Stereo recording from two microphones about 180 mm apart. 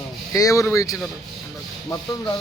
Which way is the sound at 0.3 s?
15° left (ahead or behind).